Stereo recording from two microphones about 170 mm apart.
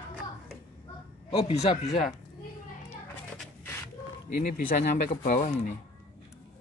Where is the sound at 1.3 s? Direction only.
35° left (ahead or behind).